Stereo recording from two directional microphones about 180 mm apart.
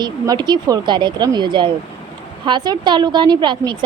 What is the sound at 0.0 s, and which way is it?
A woman's voice, 25° right (ahead or behind).